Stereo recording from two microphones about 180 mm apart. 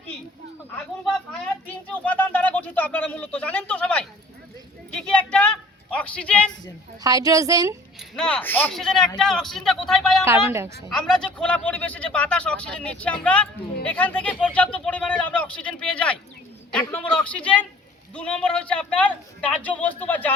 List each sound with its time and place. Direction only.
1.3 s a sound: 10° left (ahead or behind)
4.9 s a man's voice: 5° left (ahead or behind)
7.0 s a woman's voice: 20° right (ahead or behind)
8.1 s a man's voice: 5° left (ahead or behind)
10.2 s a woman's voice: 15° right (ahead or behind)
10.8 s a man's voice: 5° left (ahead or behind)